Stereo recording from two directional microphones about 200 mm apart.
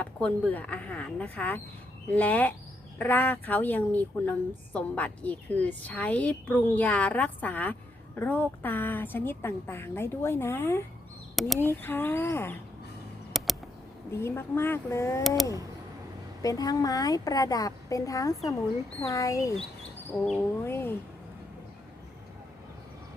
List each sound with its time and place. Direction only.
0.0 s a woman's voice: 5° left (ahead or behind)
11.3 s speech: centre (ahead or behind)
11.6 s a woman's voice: 10° left (ahead or behind)
13.3 s a sound: centre (ahead or behind)
14.1 s a woman's voice: 10° left (ahead or behind)
16.4 s a woman's voice: 20° left (ahead or behind)